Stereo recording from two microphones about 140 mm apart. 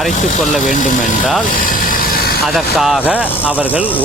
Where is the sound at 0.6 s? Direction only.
70° left (ahead or behind).